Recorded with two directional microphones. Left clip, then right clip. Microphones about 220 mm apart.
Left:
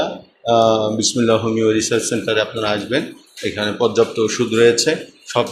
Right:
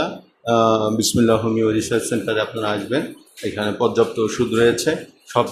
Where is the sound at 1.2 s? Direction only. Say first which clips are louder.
Left 1 dB; 5° right (ahead or behind).